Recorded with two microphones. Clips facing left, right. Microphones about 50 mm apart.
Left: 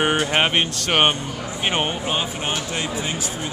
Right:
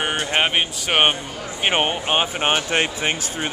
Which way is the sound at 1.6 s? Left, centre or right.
Right.